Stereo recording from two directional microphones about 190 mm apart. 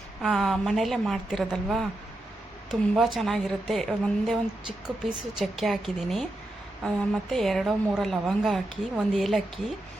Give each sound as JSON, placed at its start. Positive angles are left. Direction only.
{"t": 0.2, "sound": "a woman's voice", "side_deg": 0}